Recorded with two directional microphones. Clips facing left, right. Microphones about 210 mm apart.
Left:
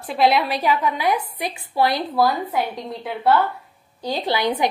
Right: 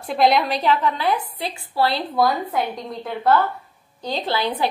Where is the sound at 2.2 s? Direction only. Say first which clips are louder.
Even; 5° left (ahead or behind).